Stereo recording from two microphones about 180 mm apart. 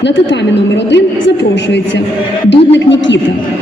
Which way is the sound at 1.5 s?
75° left (ahead or behind).